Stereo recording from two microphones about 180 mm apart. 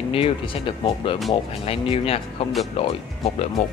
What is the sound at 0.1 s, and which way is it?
Speech, 30° left (ahead or behind).